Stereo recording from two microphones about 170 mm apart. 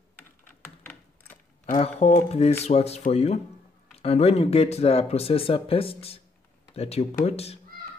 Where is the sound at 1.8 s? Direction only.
40° left (ahead or behind).